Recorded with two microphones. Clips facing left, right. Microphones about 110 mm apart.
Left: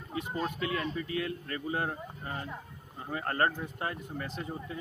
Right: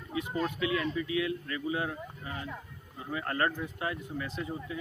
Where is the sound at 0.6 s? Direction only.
40° left (ahead or behind).